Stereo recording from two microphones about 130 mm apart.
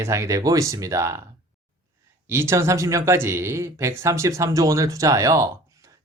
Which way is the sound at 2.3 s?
20° right (ahead or behind).